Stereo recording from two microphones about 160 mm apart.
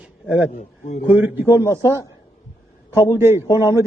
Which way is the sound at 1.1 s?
10° right (ahead or behind).